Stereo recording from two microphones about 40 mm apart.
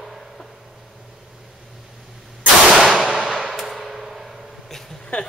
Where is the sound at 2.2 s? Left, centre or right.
Centre.